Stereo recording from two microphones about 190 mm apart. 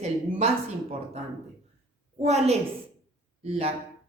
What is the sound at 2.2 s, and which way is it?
A woman's voice, 35° right (ahead or behind).